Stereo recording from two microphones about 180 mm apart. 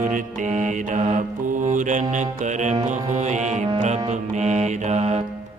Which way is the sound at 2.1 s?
45° right (ahead or behind).